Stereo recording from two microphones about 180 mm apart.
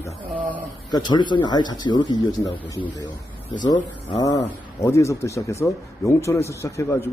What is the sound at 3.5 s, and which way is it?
Speech, 25° left (ahead or behind).